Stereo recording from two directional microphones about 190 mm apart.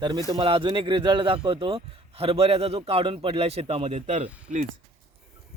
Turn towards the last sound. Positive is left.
turn(degrees=-35)  # may be behind; listen again after turning